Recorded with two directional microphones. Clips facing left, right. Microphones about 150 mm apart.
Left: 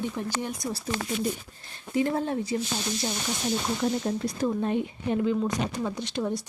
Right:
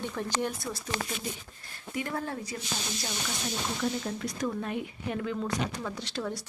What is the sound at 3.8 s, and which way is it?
Speech, 30° left (ahead or behind).